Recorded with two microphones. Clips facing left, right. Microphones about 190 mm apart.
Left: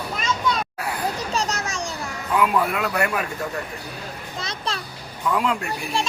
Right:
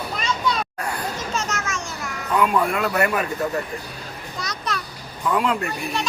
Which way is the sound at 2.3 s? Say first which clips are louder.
Right 1 dB; 5° left (ahead or behind).